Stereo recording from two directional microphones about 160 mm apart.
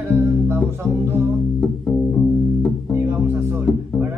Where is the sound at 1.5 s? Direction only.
10° left (ahead or behind).